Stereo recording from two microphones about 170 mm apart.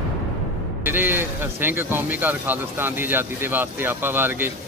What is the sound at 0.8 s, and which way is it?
Speech, 10° right (ahead or behind).